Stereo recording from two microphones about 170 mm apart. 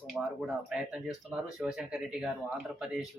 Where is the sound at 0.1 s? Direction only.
5° right (ahead or behind).